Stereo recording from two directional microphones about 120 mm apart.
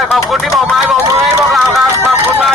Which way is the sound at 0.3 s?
Centre (ahead or behind).